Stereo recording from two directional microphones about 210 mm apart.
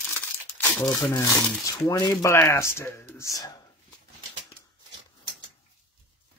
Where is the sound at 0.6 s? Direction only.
10° left (ahead or behind).